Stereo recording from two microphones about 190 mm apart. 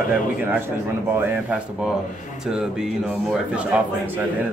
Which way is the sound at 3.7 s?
5° right (ahead or behind).